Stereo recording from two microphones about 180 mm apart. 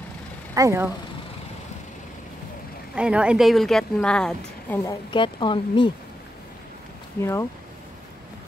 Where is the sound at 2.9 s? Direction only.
5° right (ahead or behind).